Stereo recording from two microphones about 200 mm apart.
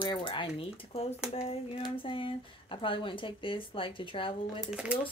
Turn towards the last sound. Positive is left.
turn(degrees=-5)  # may be behind; listen again after turning